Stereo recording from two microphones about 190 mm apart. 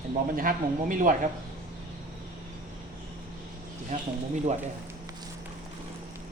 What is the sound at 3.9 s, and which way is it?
Speech, 40° right (ahead or behind).